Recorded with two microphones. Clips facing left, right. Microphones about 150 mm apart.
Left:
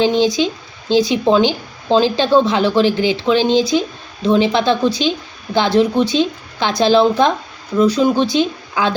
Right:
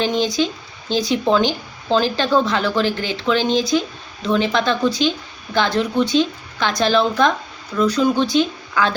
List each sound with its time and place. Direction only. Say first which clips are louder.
0.0 s speech: left 5 dB; 25° left (ahead or behind)